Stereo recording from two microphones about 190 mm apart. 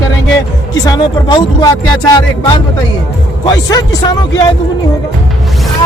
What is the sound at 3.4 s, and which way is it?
Speech, 20° left (ahead or behind).